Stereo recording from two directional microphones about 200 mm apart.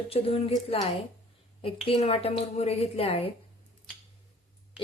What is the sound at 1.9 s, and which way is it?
Speech, 30° left (ahead or behind).